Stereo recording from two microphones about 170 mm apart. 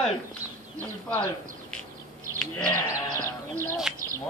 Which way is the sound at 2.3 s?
15° left (ahead or behind).